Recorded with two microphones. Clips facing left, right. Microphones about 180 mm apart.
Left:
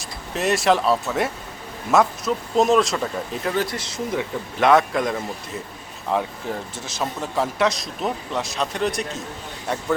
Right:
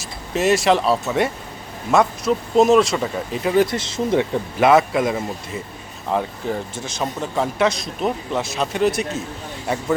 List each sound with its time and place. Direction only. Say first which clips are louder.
0.0 s speech: right 4 dB; centre (ahead or behind)
3.5 s speech: right 10 dB; 20° right (ahead or behind)
4.6 s speech: right 2 dB; 5° right (ahead or behind)